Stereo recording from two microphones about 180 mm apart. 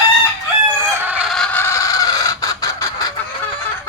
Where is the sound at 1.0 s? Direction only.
5° right (ahead or behind).